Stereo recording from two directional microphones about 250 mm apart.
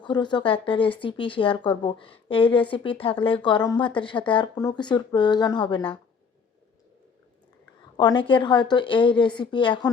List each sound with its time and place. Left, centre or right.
0.0 s speech: centre
7.9 s speech: centre